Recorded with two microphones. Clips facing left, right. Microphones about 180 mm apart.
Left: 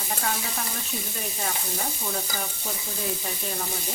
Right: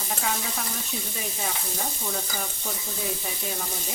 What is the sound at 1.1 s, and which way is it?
Frying, centre (ahead or behind).